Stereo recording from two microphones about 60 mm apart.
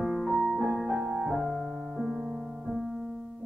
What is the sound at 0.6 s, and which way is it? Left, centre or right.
Music, centre.